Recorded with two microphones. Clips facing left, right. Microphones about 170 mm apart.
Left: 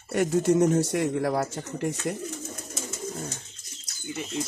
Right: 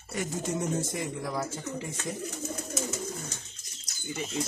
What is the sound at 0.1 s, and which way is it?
Speech, 65° left (ahead or behind).